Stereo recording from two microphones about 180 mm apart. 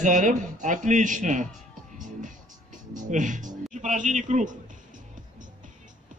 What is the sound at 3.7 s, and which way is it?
Speech, 45° right (ahead or behind).